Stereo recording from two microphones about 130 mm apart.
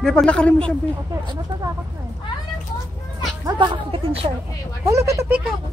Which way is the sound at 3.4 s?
35° right (ahead or behind).